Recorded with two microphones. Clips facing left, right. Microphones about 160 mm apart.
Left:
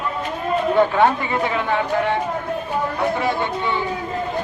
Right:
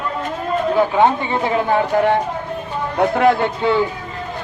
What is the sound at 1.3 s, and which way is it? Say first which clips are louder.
Speech: right 4 dB; 30° right (ahead or behind).